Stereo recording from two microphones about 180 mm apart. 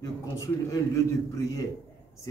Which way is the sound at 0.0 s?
15° left (ahead or behind).